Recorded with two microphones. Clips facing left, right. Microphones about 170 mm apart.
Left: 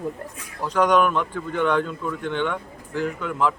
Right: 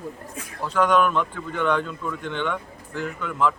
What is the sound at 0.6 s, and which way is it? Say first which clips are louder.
Speech: left 1 dB; 15° left (ahead or behind).